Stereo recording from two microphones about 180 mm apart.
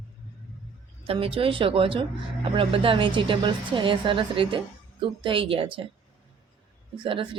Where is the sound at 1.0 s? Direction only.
30° right (ahead or behind).